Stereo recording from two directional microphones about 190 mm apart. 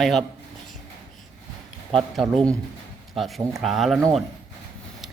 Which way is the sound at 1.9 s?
Centre (ahead or behind).